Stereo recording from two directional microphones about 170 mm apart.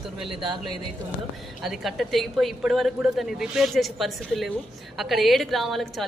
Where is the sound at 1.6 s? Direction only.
Centre (ahead or behind).